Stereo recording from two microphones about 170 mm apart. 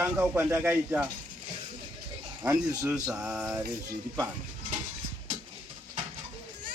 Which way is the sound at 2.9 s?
5° right (ahead or behind).